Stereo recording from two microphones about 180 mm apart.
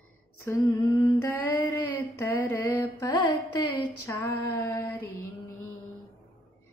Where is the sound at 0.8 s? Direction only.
20° left (ahead or behind).